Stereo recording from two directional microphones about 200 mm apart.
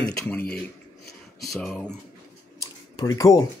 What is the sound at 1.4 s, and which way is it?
Speech, centre (ahead or behind).